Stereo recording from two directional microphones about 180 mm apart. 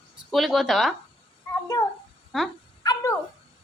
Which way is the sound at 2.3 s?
Centre (ahead or behind).